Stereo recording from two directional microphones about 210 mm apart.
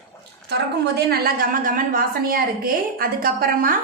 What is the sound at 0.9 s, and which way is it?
A woman's voice, 45° right (ahead or behind).